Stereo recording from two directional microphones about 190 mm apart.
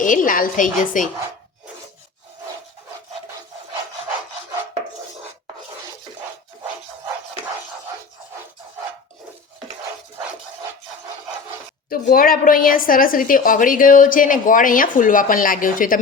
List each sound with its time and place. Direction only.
0.0 s a woman's voice: 45° left (ahead or behind)
11.9 s a woman's voice: 50° left (ahead or behind)